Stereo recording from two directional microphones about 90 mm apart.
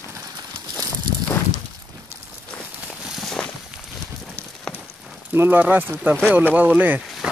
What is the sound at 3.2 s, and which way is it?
Walk, 5° left (ahead or behind).